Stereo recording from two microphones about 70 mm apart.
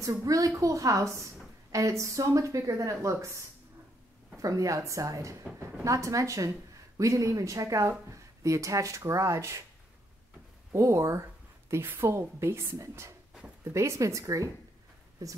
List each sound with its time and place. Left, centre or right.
0.0 s speech: right
4.4 s speech: right
10.7 s speech: right
11.7 s a woman's voice: right